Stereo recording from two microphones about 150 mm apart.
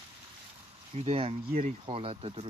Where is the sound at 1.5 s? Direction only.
55° right (ahead or behind).